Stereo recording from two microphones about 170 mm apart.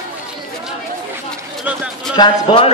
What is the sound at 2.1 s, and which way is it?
Speech, 30° left (ahead or behind).